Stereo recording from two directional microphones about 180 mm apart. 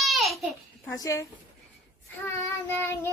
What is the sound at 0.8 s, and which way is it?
Child singing, 20° left (ahead or behind).